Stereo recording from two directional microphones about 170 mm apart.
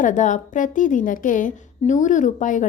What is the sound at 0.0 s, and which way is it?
A woman's voice, 45° left (ahead or behind).